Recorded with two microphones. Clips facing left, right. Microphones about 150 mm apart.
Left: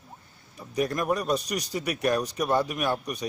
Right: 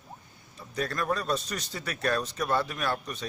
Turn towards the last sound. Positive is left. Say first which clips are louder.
# left 4 dB
turn(degrees=15)  # may be behind; listen again after turning